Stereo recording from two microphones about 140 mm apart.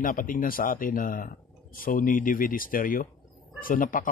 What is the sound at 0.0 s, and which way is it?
Speech, 75° left (ahead or behind).